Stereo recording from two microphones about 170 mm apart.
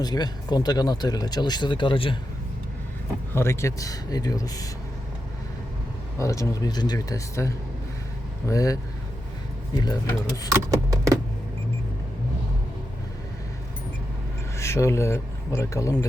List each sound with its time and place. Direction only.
0.0 s speech: 25° left (ahead or behind)
3.3 s speech: 15° left (ahead or behind)
6.1 s speech: 20° left (ahead or behind)
10.5 s a sound: 20° right (ahead or behind)
14.6 s speech: 15° left (ahead or behind)